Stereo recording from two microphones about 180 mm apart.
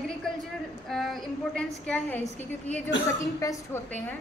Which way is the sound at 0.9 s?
Centre (ahead or behind).